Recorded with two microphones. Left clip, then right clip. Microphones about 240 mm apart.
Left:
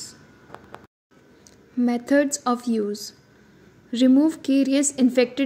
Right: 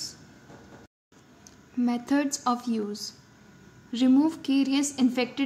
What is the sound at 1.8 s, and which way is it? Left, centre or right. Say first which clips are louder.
A woman's voice: left 6 dB; centre.